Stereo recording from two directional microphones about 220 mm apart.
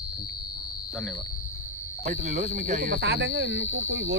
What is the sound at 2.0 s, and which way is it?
Speech, 35° right (ahead or behind).